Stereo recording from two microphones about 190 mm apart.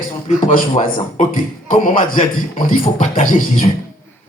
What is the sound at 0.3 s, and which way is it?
Speech, 45° left (ahead or behind).